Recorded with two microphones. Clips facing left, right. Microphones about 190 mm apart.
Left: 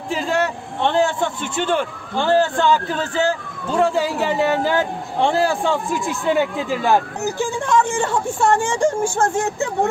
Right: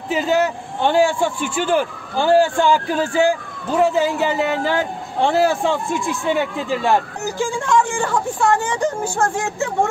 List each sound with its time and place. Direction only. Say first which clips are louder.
0.1 s a man's voice: right 3 dB; 5° right (ahead or behind)
7.5 s speech: even; 20° left (ahead or behind)